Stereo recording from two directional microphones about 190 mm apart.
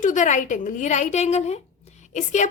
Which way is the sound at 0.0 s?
40° left (ahead or behind).